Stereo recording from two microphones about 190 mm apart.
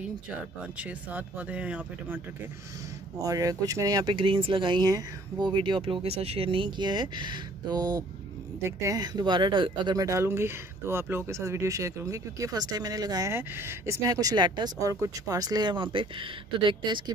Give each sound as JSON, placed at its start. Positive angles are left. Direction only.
{"t": 0.7, "sound": "speech", "side_deg": -5}